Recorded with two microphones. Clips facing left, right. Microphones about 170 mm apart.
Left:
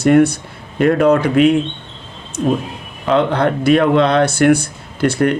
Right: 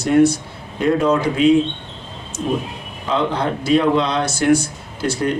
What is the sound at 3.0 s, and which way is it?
Speech, 65° left (ahead or behind).